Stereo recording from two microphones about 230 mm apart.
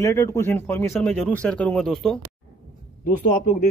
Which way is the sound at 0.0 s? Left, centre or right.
Centre.